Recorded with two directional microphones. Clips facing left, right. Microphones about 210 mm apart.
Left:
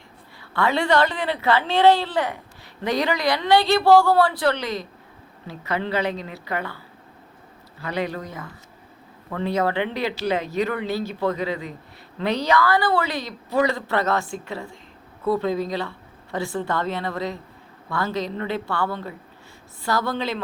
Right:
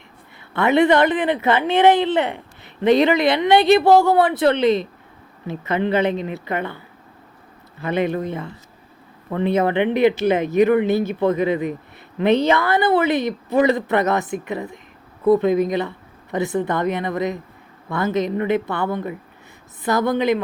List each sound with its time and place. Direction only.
0.5 s a woman's voice: 20° right (ahead or behind)
7.8 s a woman's voice: 20° right (ahead or behind)